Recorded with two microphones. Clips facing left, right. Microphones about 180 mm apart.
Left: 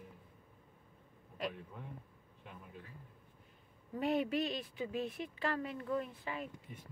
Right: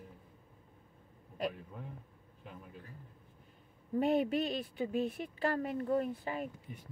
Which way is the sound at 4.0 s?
45° right (ahead or behind).